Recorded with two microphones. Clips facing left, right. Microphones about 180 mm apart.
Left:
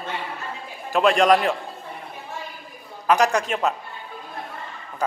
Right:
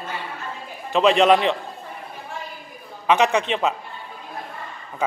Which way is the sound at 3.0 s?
Centre (ahead or behind).